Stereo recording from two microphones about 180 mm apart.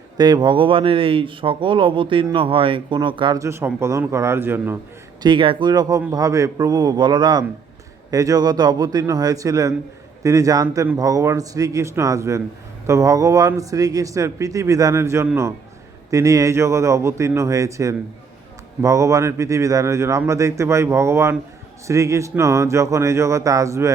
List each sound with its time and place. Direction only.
0.2 s a man's voice: 25° right (ahead or behind)
5.2 s a man's voice: 25° right (ahead or behind)